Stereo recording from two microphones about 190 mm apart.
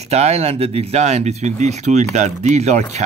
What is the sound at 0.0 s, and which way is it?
Speech, 35° right (ahead or behind).